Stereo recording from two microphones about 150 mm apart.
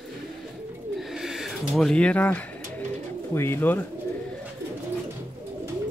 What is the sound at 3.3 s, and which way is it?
Speech, 15° left (ahead or behind).